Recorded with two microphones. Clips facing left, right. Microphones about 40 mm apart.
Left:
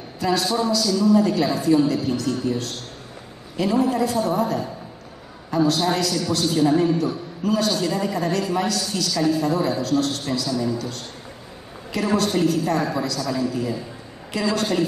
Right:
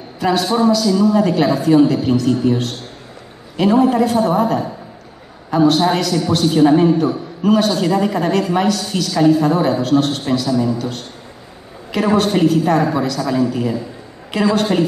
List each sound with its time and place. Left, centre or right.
0.2 s a man's voice: right